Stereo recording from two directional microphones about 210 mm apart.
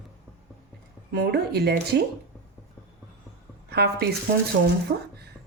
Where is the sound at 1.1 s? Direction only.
50° right (ahead or behind).